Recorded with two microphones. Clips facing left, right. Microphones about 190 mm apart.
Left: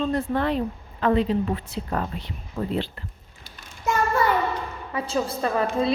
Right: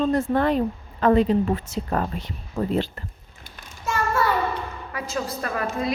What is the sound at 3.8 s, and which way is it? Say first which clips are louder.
Child singing: left 1 dB; 15° left (ahead or behind).